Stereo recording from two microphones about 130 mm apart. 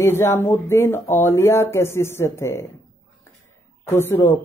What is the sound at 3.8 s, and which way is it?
Speech, 20° left (ahead or behind).